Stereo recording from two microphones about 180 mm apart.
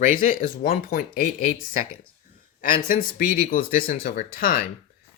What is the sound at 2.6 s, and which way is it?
Speech, 50° left (ahead or behind).